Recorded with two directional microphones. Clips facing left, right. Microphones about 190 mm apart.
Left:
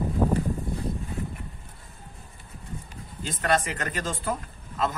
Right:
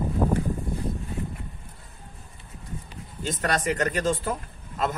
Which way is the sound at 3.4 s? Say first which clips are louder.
Right 1 dB; 40° right (ahead or behind).